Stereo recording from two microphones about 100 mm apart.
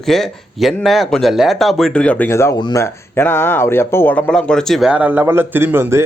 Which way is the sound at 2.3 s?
25° left (ahead or behind).